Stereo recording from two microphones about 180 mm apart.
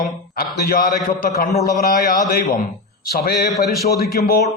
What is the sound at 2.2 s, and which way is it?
A man's voice, 50° left (ahead or behind).